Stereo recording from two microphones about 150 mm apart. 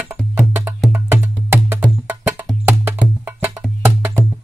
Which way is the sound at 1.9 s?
10° right (ahead or behind).